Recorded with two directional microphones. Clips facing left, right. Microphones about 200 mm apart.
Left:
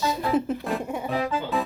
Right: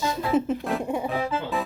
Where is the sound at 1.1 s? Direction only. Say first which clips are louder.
Left 1 dB; centre (ahead or behind).